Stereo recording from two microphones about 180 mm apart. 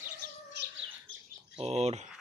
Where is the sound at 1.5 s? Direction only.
35° right (ahead or behind).